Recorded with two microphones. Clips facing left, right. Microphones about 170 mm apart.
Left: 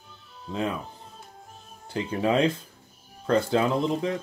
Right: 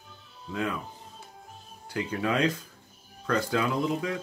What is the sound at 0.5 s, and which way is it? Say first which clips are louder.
Speech: left 2 dB; 25° left (ahead or behind).